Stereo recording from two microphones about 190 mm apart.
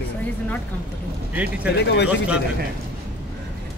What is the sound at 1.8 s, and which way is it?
Speech, 65° left (ahead or behind).